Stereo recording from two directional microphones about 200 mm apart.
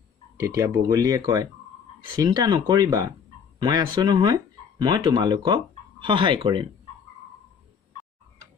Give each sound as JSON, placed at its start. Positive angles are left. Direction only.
{"t": 0.4, "sound": "speech", "side_deg": -15}